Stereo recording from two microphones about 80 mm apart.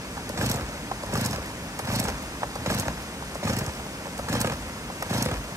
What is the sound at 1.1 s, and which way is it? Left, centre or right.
Vehicle, right.